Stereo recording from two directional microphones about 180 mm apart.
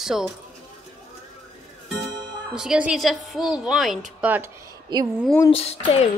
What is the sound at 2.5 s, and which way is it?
A woman's voice, 5° right (ahead or behind).